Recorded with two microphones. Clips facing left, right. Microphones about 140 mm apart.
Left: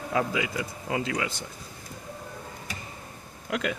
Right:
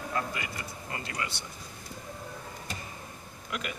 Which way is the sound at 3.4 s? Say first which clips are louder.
Left 8 dB; 90° left.